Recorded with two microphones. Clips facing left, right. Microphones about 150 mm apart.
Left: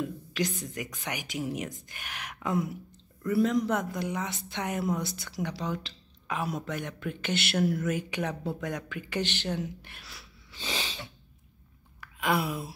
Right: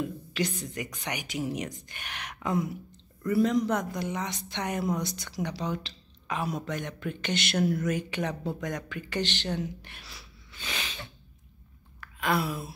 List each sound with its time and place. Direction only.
0.7 s a woman's voice: centre (ahead or behind)
10.6 s sneeze: 30° left (ahead or behind)
12.0 s a sound: 15° left (ahead or behind)